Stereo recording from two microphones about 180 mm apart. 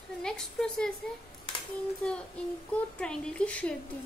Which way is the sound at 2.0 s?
10° left (ahead or behind).